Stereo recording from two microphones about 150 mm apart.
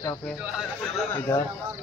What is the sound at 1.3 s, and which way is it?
Speech, 15° left (ahead or behind).